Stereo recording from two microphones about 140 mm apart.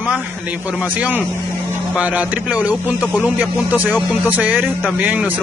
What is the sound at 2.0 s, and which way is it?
Speech, 10° right (ahead or behind).